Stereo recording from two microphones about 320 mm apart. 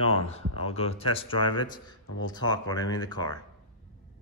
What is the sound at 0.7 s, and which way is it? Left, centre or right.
Speech, centre.